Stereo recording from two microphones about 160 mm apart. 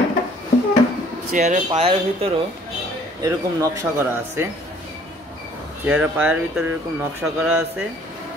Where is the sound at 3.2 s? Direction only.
20° right (ahead or behind).